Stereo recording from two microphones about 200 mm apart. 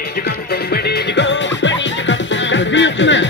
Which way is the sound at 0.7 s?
55° left (ahead or behind).